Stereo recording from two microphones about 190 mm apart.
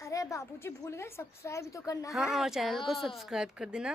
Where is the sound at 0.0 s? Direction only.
15° left (ahead or behind).